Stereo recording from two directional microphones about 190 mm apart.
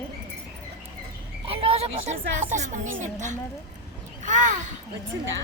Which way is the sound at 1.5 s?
30° right (ahead or behind).